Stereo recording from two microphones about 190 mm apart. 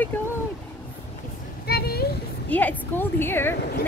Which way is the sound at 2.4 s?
10° left (ahead or behind).